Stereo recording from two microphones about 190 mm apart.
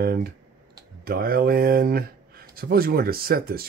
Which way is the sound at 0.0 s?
55° right (ahead or behind).